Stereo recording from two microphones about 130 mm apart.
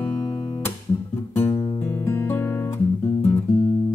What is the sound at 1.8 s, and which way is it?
Guitar, 20° left (ahead or behind).